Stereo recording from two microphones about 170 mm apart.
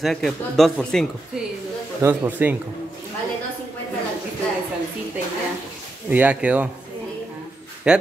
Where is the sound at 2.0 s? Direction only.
10° right (ahead or behind).